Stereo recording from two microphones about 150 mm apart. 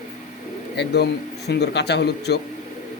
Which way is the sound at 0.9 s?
90° left.